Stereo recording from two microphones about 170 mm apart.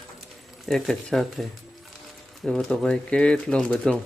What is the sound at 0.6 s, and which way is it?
Speech, centre (ahead or behind).